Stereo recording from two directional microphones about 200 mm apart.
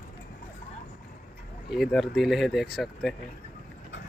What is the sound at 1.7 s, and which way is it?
Speech, centre (ahead or behind).